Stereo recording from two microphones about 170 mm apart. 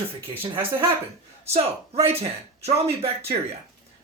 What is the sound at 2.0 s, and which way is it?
Speech, 35° right (ahead or behind).